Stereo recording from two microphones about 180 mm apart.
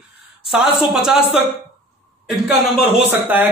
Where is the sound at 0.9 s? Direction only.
5° right (ahead or behind).